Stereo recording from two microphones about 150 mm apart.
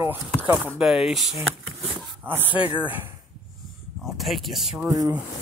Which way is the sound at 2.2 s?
15° right (ahead or behind).